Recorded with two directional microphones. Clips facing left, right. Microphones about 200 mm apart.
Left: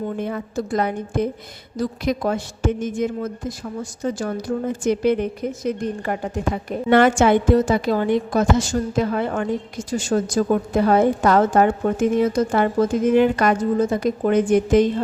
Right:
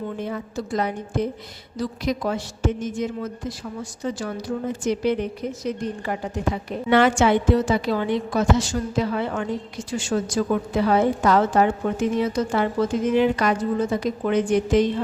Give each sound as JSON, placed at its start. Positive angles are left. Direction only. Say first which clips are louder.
{"t": 0.2, "sound": "a woman's voice", "louder": "left 3 dB", "side_deg": 55}